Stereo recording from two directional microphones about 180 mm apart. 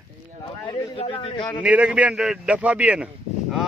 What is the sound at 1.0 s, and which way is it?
Speech, 30° left (ahead or behind).